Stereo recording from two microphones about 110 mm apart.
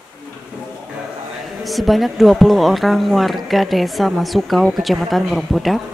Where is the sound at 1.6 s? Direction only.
Centre (ahead or behind).